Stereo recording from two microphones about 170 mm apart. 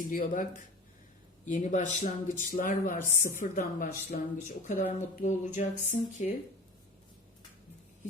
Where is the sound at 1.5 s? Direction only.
45° left (ahead or behind).